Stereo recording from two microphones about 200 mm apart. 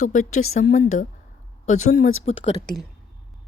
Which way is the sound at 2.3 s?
30° left (ahead or behind).